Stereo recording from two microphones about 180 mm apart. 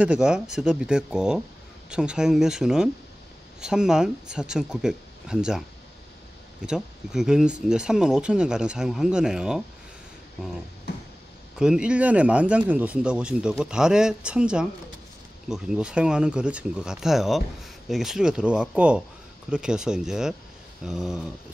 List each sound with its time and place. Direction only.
0.0 s speech: 5° right (ahead or behind)
6.6 s speech: 5° right (ahead or behind)
10.9 s a sound: 70° left (ahead or behind)
11.5 s speech: 5° right (ahead or behind)